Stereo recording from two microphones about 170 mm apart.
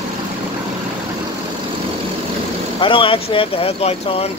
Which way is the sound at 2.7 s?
30° left (ahead or behind).